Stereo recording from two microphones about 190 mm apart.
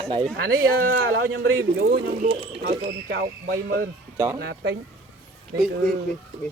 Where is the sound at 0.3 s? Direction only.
50° right (ahead or behind).